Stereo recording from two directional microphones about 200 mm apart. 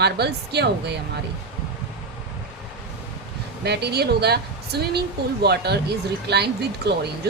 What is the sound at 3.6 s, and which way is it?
A woman's voice, 55° right (ahead or behind).